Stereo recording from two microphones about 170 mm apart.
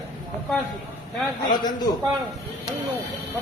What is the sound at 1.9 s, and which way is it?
Speech, 25° left (ahead or behind).